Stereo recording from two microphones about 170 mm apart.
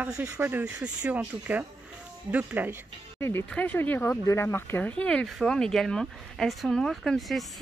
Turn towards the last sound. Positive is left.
turn(degrees=0)  # may be behind; listen again after turning